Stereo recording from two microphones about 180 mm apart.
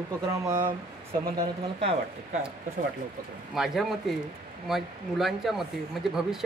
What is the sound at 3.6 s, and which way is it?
Speech, centre (ahead or behind).